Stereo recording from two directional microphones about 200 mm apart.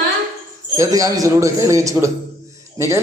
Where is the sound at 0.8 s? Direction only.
15° right (ahead or behind).